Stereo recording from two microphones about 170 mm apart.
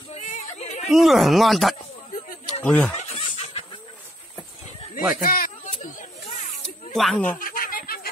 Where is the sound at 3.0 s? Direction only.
40° left (ahead or behind).